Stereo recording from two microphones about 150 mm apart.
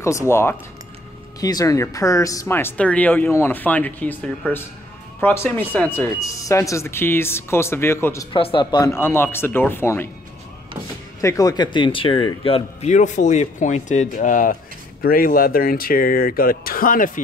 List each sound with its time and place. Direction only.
0.0 s speech: 20° left (ahead or behind)
8.3 s a man's voice: 35° left (ahead or behind)
8.9 s speech: 15° left (ahead or behind)
11.1 s a man's voice: 20° left (ahead or behind); by 12.9 s 40° left (ahead or behind)
12.9 s speech: 55° left (ahead or behind)